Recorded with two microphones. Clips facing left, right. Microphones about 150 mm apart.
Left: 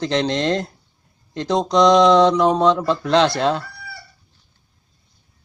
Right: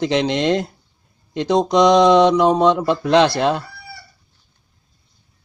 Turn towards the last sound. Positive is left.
turn(degrees=-15)  # may be behind; listen again after turning